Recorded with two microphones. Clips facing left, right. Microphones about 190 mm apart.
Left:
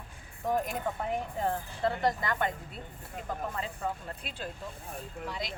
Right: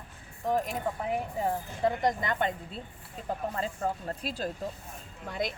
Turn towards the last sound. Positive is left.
turn(degrees=-50)  # may be behind; listen again after turning